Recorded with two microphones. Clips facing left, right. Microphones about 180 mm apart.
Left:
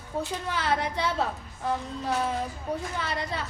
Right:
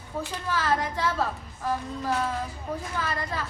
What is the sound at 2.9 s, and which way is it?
Speech, 25° left (ahead or behind).